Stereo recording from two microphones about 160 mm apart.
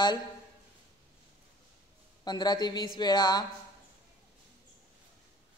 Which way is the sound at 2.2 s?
25° left (ahead or behind).